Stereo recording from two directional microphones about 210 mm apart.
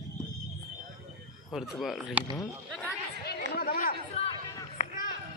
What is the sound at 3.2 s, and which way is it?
Chatter, 50° left (ahead or behind).